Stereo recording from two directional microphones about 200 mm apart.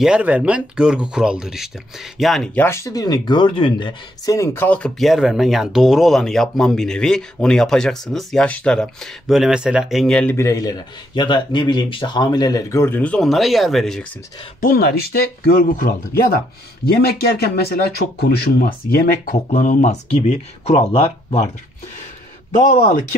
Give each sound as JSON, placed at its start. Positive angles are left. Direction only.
{"t": 0.0, "sound": "speech", "side_deg": -5}
{"t": 14.6, "sound": "speech", "side_deg": 50}
{"t": 22.7, "sound": "speech", "side_deg": 40}